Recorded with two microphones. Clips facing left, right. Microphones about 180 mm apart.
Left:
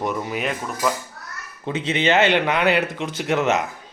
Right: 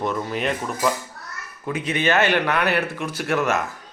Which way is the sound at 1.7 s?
25° left (ahead or behind).